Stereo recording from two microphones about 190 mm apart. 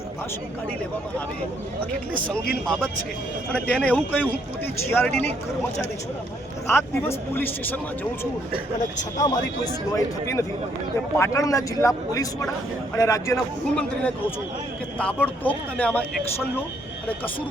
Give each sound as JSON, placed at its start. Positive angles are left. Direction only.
{"t": 2.1, "sound": "speech", "side_deg": 5}
{"t": 6.7, "sound": "speech", "side_deg": 10}
{"t": 9.1, "sound": "speech", "side_deg": 20}